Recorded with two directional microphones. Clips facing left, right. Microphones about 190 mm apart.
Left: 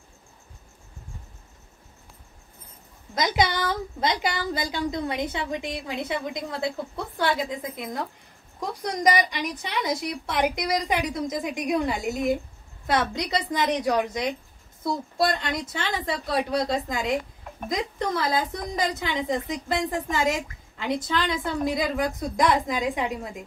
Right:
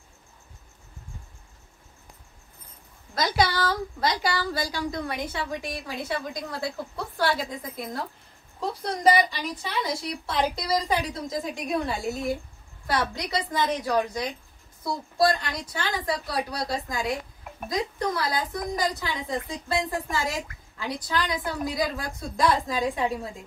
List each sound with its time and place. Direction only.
3.2 s a woman's voice: 20° left (ahead or behind)